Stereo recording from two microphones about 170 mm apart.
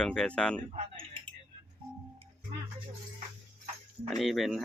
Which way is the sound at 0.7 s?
35° right (ahead or behind).